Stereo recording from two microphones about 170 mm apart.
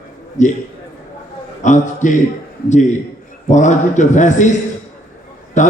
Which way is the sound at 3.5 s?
45° left (ahead or behind).